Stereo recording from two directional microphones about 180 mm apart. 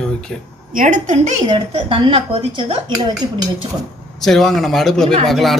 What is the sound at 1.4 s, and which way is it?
Speech, 30° right (ahead or behind).